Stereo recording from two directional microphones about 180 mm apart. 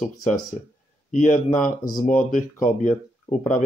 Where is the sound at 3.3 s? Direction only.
30° left (ahead or behind).